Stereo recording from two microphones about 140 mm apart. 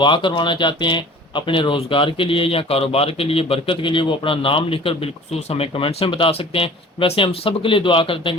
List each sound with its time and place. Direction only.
0.0 s speech: 35° left (ahead or behind)